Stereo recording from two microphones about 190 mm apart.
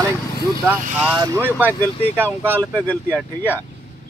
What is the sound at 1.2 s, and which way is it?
Speech, 10° right (ahead or behind).